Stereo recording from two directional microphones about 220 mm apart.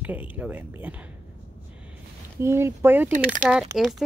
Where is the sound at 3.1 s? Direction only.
35° right (ahead or behind).